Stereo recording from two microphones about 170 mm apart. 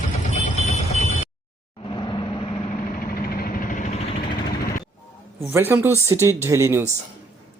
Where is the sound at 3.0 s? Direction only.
55° left (ahead or behind); by 4.3 s 35° left (ahead or behind).